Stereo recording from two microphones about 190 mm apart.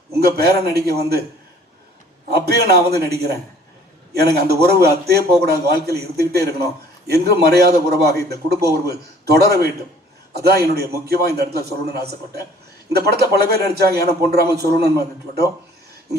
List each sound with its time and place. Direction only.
0.2 s a man's voice: 55° right (ahead or behind)
2.3 s a man's voice: 55° right (ahead or behind)